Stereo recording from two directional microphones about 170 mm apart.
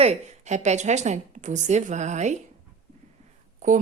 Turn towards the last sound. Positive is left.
turn(degrees=-45)  # may be behind; listen again after turning